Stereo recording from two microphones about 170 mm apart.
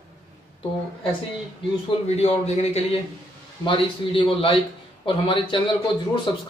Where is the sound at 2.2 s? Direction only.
40° left (ahead or behind).